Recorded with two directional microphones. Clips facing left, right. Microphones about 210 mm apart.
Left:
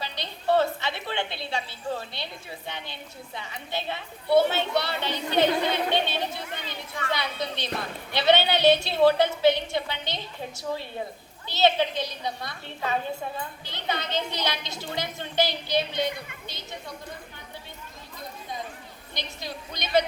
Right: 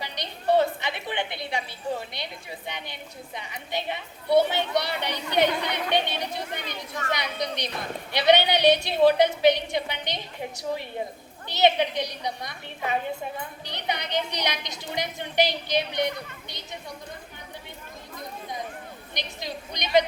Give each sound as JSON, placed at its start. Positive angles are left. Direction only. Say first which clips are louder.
{"t": 0.0, "sound": "a woman's voice", "louder": "right 1 dB", "side_deg": -15}
{"t": 6.6, "sound": "speech", "louder": "right 1 dB", "side_deg": -45}
{"t": 7.1, "sound": "a woman's voice", "louder": "right 1 dB", "side_deg": -20}
{"t": 11.4, "sound": "a woman's voice", "louder": "right 1 dB", "side_deg": -15}
{"t": 19.1, "sound": "a woman's voice", "louder": "right 1 dB", "side_deg": -15}